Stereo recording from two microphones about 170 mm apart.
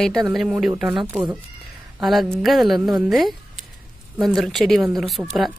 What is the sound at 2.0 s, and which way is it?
Speech, centre (ahead or behind).